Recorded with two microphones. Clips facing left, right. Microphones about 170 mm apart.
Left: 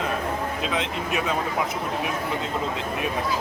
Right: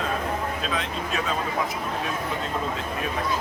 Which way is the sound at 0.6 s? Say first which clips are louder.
Left 2 dB; 20° left (ahead or behind).